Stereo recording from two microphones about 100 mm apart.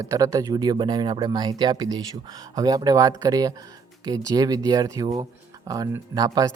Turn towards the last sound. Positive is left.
turn(degrees=-40)  # may be behind; listen again after turning